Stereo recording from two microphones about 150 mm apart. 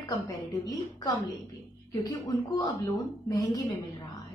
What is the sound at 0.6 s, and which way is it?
Speech, 25° left (ahead or behind).